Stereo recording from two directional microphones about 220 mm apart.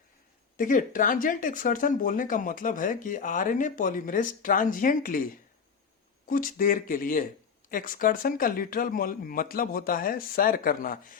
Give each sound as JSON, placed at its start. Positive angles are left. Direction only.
{"t": 0.5, "sound": "speech", "side_deg": 35}
{"t": 6.2, "sound": "speech", "side_deg": 40}